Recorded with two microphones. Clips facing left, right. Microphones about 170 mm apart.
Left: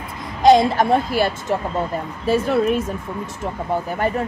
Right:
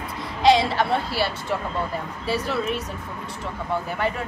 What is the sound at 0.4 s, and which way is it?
A woman's voice, 45° left (ahead or behind).